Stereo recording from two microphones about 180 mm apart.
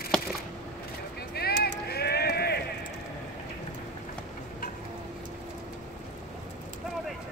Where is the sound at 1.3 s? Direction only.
60° left (ahead or behind).